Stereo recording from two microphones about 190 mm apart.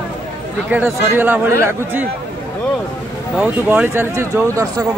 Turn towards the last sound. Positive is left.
turn(degrees=-15)  # may be behind; listen again after turning